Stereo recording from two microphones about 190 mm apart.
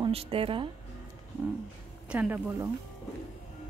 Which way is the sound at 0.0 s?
30° right (ahead or behind).